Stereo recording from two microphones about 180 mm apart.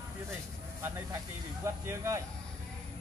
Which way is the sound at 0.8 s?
15° right (ahead or behind).